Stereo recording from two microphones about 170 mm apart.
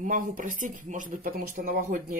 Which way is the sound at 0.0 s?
50° right (ahead or behind).